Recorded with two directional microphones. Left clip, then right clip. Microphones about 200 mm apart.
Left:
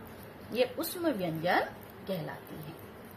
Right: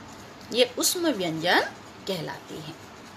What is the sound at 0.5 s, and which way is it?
A woman's voice, 55° right (ahead or behind).